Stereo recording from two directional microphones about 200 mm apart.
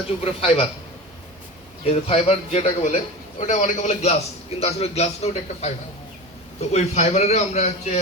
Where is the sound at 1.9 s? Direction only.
30° left (ahead or behind).